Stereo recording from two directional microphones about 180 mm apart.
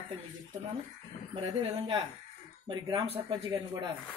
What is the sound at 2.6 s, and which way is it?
Speech, 25° right (ahead or behind).